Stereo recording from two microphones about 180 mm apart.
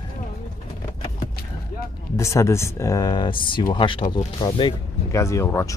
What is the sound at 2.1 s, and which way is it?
Speech, 15° left (ahead or behind).